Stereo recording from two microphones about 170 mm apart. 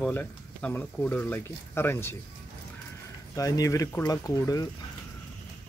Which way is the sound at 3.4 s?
20° left (ahead or behind).